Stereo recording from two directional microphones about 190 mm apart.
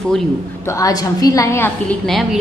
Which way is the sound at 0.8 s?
20° left (ahead or behind).